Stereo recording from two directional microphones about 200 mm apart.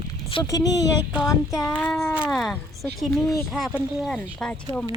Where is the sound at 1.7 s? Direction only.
5° left (ahead or behind).